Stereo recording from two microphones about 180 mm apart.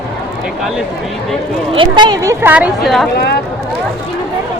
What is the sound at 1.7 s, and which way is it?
Speech, 25° right (ahead or behind).